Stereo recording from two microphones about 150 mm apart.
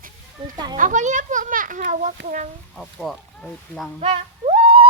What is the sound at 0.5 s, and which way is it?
Speech, 30° right (ahead or behind).